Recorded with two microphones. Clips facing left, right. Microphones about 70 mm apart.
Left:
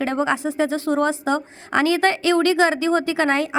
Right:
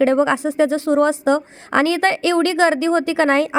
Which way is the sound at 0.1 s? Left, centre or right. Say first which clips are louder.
Right 5 dB; right.